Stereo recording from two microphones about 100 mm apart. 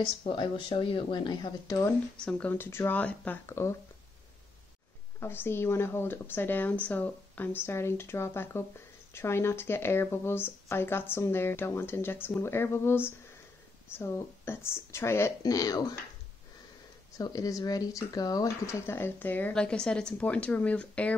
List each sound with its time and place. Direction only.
0.0 s speech: 55° left (ahead or behind)
1.7 s speech: 35° left (ahead or behind)
2.1 s a woman's voice: 10° left (ahead or behind)
5.2 s speech: 20° left (ahead or behind)
15.4 s speech: 35° left (ahead or behind)
17.2 s speech: 35° left (ahead or behind)
18.9 s a woman's voice: 25° left (ahead or behind)